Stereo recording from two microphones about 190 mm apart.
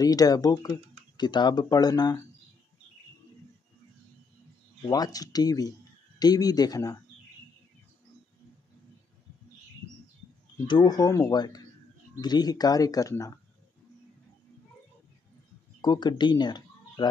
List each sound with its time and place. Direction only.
0.0 s speech: 20° left (ahead or behind)
4.8 s speech: 20° left (ahead or behind)
10.7 s speech: 20° left (ahead or behind)
15.8 s speech: 20° left (ahead or behind)